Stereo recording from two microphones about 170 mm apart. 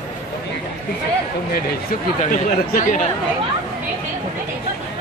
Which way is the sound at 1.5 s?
55° left (ahead or behind).